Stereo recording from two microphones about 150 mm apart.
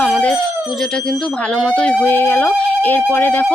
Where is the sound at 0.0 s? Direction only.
10° left (ahead or behind).